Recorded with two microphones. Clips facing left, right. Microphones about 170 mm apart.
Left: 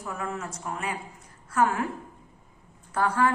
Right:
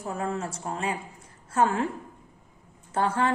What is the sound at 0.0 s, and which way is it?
A woman's voice, 30° right (ahead or behind).